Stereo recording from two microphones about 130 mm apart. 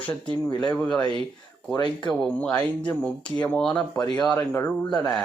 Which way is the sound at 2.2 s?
10° left (ahead or behind).